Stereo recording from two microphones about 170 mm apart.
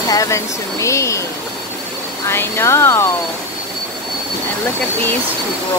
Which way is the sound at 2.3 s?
15° left (ahead or behind).